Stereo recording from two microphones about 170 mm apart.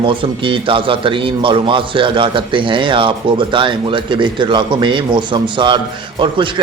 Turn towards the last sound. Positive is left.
turn(degrees=-30)  # may be behind; listen again after turning